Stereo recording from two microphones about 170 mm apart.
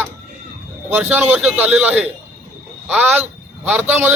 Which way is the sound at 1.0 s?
10° right (ahead or behind).